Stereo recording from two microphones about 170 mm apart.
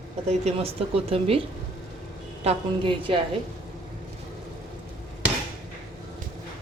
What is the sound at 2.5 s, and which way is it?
Speech, 30° right (ahead or behind).